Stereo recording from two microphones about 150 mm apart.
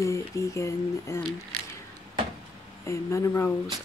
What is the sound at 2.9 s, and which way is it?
Speech, 20° left (ahead or behind).